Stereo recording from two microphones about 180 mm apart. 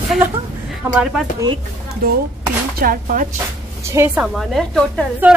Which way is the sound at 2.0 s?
55° right (ahead or behind).